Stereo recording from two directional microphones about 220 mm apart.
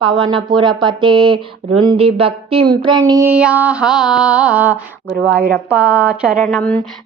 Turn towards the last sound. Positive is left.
turn(degrees=5)  # may be behind; listen again after turning